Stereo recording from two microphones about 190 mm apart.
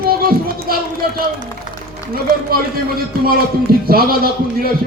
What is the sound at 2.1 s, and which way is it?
Speech, 50° right (ahead or behind).